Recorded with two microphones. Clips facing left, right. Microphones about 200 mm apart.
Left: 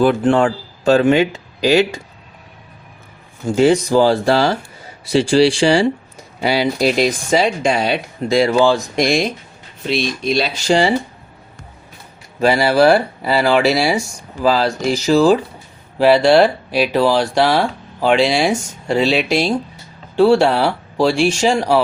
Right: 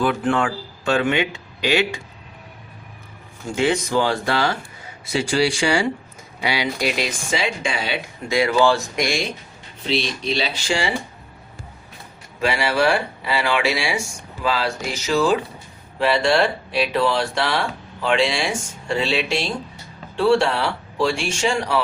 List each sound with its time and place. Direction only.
0.0 s speech: 35° left (ahead or behind)
3.4 s speech: 35° left (ahead or behind)
9.9 s speech: 50° left (ahead or behind)
12.4 s speech: 40° left (ahead or behind)